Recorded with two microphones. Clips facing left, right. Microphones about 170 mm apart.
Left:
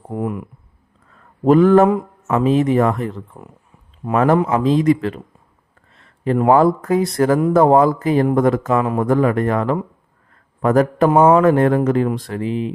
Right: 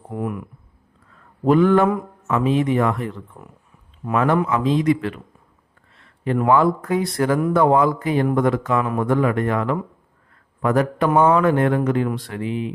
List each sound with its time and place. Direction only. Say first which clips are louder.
0.1 s speech: left 3 dB; 25° left (ahead or behind)
1.5 s speech: left 4 dB; 40° left (ahead or behind)
1.9 s a sound: left 4 dB; 25° left (ahead or behind)
2.4 s speech: left 4 dB; 40° left (ahead or behind)
11.1 s speech: left 3 dB; 30° left (ahead or behind)